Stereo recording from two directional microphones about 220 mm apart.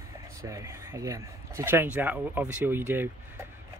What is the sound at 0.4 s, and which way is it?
Speech, 15° right (ahead or behind).